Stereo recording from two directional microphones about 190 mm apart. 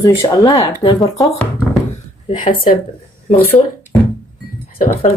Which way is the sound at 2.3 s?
25° left (ahead or behind).